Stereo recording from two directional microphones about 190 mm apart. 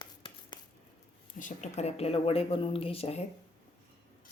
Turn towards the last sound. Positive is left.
turn(degrees=30)  # may be behind; listen again after turning